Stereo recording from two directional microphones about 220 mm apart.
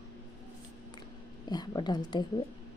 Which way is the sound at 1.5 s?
20° left (ahead or behind).